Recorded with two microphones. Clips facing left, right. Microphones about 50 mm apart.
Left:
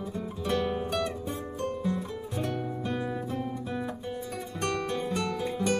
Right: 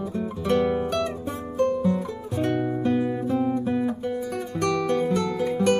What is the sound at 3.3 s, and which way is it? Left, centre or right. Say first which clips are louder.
Music: right 10 dB; right.